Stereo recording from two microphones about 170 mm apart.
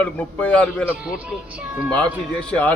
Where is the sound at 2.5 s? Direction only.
10° left (ahead or behind).